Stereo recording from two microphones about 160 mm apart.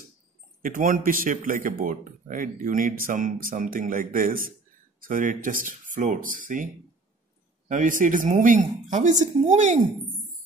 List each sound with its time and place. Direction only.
0.6 s speech: 55° right (ahead or behind)